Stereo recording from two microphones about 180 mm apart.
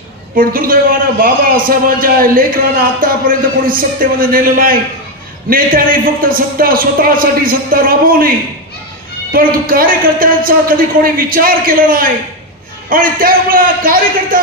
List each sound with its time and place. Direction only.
0.4 s a man's voice: 50° right (ahead or behind)
6.2 s a man's voice: 50° right (ahead or behind)
9.3 s a man's voice: 50° right (ahead or behind)